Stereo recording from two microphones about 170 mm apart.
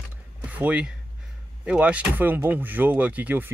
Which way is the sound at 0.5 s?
10° right (ahead or behind).